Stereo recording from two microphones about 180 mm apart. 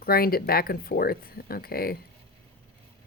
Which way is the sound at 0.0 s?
55° left (ahead or behind).